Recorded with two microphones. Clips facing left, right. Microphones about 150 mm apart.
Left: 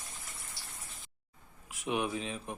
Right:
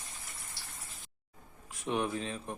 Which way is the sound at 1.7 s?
5° left (ahead or behind).